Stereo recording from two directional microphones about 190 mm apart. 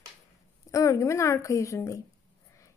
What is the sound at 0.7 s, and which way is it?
A woman's voice, 15° left (ahead or behind).